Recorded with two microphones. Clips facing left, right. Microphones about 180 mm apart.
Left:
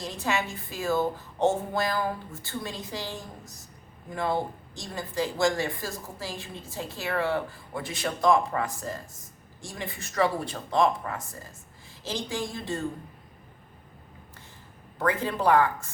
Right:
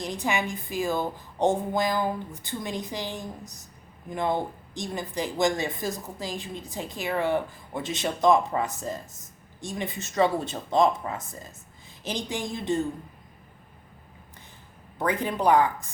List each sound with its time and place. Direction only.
0.0 s a woman's voice: 15° right (ahead or behind)
14.9 s a woman's voice: 20° right (ahead or behind)